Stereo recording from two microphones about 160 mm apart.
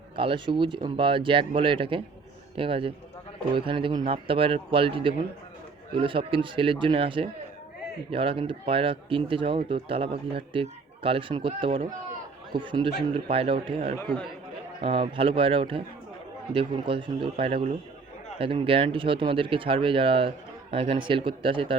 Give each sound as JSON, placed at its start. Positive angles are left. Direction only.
{"t": 0.2, "sound": "speech", "side_deg": -30}